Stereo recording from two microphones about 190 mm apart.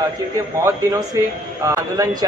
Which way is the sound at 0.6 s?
15° right (ahead or behind).